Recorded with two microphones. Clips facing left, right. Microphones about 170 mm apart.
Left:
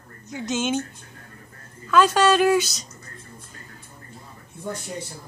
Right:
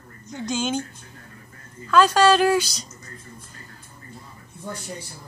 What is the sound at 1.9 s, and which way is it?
Speech, centre (ahead or behind).